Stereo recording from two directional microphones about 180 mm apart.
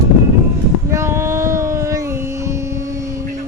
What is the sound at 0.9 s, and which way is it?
Child singing, 15° right (ahead or behind).